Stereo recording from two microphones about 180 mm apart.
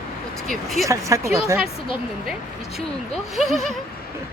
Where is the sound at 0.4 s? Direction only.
Centre (ahead or behind).